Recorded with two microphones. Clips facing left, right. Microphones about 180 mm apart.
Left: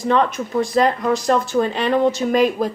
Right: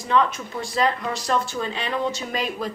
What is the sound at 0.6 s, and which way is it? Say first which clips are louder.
Speech: left 7 dB; 45° left (ahead or behind).